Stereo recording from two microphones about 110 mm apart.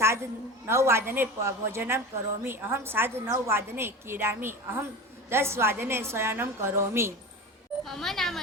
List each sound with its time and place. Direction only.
0.0 s a sound: 25° right (ahead or behind)
0.7 s a woman's voice: 25° right (ahead or behind)
7.9 s speech: 5° left (ahead or behind)